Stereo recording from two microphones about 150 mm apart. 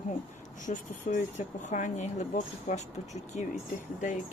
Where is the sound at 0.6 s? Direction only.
55° left (ahead or behind).